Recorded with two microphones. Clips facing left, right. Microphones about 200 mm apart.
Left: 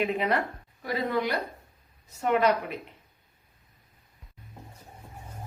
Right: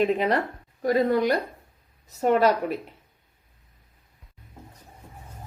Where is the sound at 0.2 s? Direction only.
35° right (ahead or behind).